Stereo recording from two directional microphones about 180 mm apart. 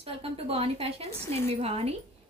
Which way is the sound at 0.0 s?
35° right (ahead or behind).